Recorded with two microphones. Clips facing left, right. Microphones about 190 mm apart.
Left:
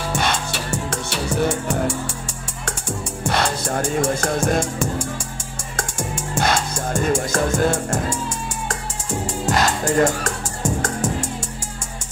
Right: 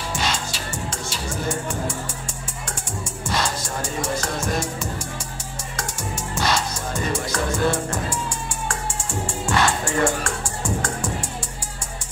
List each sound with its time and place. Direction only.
0.1 s music: 60° left (ahead or behind)
3.3 s music: 60° left (ahead or behind); by 8.2 s 45° left (ahead or behind)
9.5 s music: 40° left (ahead or behind)